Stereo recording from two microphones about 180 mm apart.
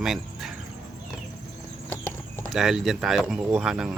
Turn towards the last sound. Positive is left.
turn(degrees=-5)  # may be behind; listen again after turning